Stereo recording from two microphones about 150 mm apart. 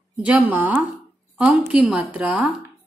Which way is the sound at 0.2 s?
10° right (ahead or behind).